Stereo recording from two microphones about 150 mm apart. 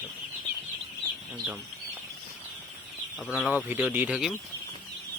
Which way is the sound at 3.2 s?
5° right (ahead or behind).